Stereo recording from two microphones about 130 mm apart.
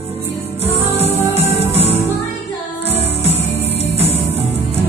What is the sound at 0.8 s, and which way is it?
Music, 50° left (ahead or behind).